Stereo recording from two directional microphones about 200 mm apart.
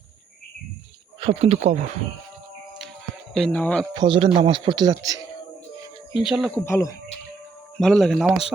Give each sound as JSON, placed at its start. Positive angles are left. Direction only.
{"t": 1.2, "sound": "speech", "side_deg": -30}
{"t": 3.3, "sound": "speech", "side_deg": 5}
{"t": 3.9, "sound": "speech", "side_deg": -25}
{"t": 6.2, "sound": "speech", "side_deg": 0}
{"t": 6.7, "sound": "speech", "side_deg": 15}
{"t": 7.8, "sound": "speech", "side_deg": 0}